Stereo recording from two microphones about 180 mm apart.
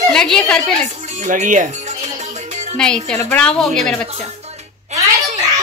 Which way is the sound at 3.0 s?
10° left (ahead or behind).